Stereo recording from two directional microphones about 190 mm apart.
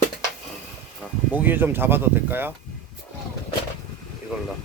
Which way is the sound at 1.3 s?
10° right (ahead or behind).